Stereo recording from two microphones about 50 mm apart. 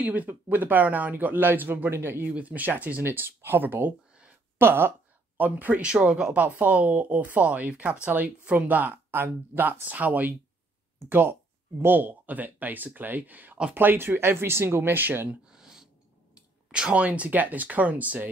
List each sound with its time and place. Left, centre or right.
0.0 s speech: right
2.3 s speech: right
5.4 s speech: right
5.9 s speech: centre
6.3 s speech: right
11.0 s speech: right
13.7 s speech: right
15.4 s a sound: centre
16.6 s speech: centre